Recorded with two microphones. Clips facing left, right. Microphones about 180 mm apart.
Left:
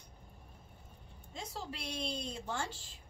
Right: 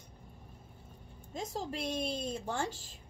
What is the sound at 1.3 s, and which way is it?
A woman's voice, 45° right (ahead or behind).